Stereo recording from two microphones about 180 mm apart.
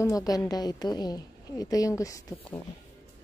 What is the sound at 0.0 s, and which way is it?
A woman's voice, 20° left (ahead or behind).